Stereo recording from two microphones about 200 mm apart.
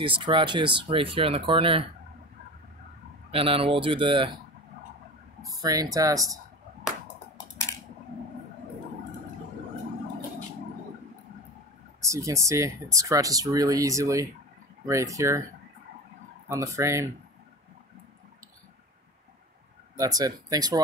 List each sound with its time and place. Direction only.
0.0 s speech: 25° right (ahead or behind)
3.3 s speech: 30° right (ahead or behind)
5.4 s speech: 20° right (ahead or behind)
12.0 s speech: 15° right (ahead or behind)
16.4 s speech: 15° right (ahead or behind)
20.0 s speech: 20° right (ahead or behind)